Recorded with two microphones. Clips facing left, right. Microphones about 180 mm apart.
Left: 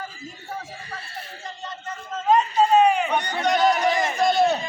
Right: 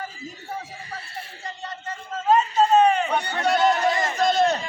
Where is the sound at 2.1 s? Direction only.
5° right (ahead or behind).